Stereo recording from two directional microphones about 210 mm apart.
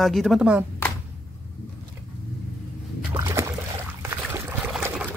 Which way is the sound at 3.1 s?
15° right (ahead or behind).